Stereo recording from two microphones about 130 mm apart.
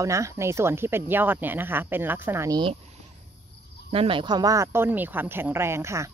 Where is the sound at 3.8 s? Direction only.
45° right (ahead or behind).